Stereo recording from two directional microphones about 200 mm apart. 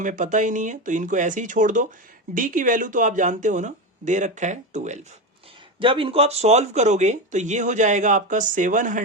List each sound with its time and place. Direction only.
0.0 s speech: 40° right (ahead or behind)
5.8 s speech: 25° right (ahead or behind)